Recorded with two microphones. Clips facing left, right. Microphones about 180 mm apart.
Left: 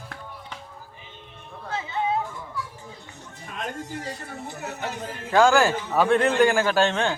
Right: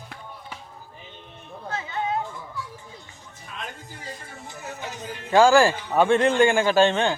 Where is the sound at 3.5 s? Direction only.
45° left (ahead or behind).